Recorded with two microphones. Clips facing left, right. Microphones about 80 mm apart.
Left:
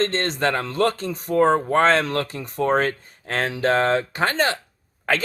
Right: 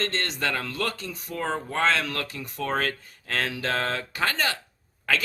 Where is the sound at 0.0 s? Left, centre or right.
Left.